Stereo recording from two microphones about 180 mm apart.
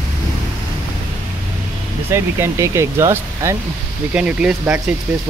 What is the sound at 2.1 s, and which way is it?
Speech, 15° right (ahead or behind).